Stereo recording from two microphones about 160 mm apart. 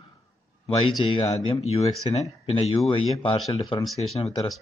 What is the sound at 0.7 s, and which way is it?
Speech, 30° left (ahead or behind).